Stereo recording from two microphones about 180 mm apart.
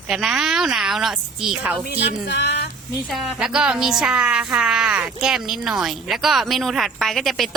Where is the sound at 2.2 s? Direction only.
70° left (ahead or behind).